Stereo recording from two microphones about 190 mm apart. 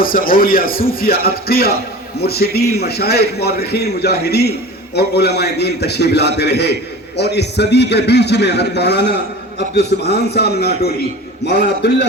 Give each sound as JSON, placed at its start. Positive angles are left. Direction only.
{"t": 0.0, "sound": "a man's voice", "side_deg": 50}